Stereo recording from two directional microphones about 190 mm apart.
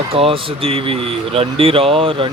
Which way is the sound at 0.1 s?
30° right (ahead or behind).